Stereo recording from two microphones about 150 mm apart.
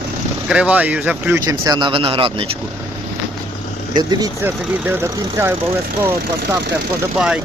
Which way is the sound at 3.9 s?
25° right (ahead or behind).